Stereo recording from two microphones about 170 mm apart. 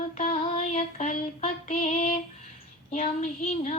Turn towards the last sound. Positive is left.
turn(degrees=40)  # may be behind; listen again after turning